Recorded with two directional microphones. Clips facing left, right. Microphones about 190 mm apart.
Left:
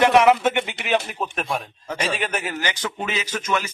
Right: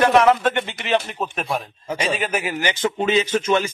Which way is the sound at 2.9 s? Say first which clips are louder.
Right 8 dB; 25° right (ahead or behind).